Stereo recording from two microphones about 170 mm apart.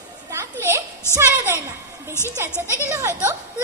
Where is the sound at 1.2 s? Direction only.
15° right (ahead or behind).